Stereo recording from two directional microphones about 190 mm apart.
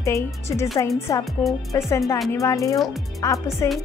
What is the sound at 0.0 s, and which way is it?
A woman's voice, 15° left (ahead or behind).